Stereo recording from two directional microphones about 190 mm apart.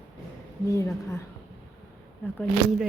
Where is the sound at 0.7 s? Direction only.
15° left (ahead or behind).